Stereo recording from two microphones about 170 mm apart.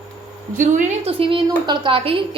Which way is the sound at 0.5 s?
45° right (ahead or behind).